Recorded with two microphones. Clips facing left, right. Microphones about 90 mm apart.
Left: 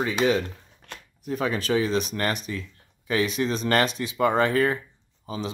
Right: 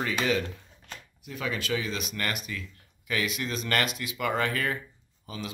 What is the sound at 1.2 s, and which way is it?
Speech, 40° left (ahead or behind).